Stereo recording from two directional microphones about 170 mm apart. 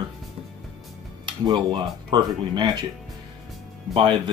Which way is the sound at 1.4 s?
25° right (ahead or behind).